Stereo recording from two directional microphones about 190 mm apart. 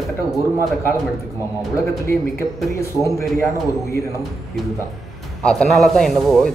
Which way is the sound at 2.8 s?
15° left (ahead or behind).